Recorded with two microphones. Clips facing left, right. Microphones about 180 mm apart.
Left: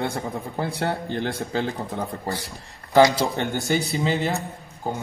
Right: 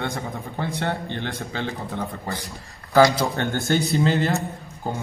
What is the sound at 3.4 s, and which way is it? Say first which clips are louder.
Speech: right 1 dB; 15° left (ahead or behind).